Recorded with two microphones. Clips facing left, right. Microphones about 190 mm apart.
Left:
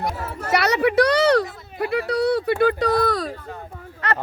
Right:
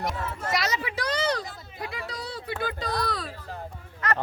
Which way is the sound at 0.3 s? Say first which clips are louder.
Left 11 dB; 65° left (ahead or behind).